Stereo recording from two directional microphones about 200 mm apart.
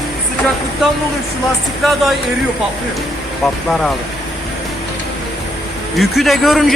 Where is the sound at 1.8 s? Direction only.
Centre (ahead or behind).